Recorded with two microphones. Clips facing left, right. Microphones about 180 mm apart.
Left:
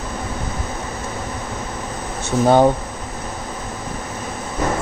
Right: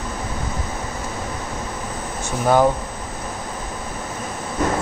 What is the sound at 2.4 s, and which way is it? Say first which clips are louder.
Speech: left 3 dB; 30° left (ahead or behind).